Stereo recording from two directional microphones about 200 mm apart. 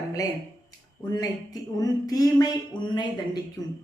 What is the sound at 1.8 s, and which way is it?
Speech, 20° left (ahead or behind).